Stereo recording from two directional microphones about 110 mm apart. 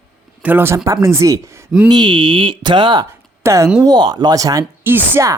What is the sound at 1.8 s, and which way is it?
Speech, 40° right (ahead or behind).